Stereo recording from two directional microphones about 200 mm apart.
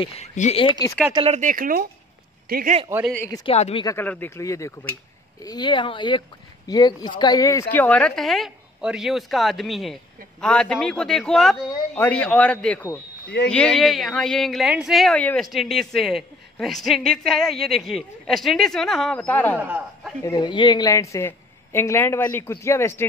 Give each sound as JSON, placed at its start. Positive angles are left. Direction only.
{"t": 0.0, "sound": "speech", "side_deg": 30}
{"t": 1.1, "sound": "speech", "side_deg": -30}
{"t": 3.3, "sound": "a woman's voice", "side_deg": 20}
{"t": 3.5, "sound": "speech", "side_deg": 35}
{"t": 3.8, "sound": "a woman's voice", "side_deg": 10}
{"t": 19.6, "sound": "a man's voice", "side_deg": -5}
{"t": 20.2, "sound": "a woman's voice", "side_deg": 20}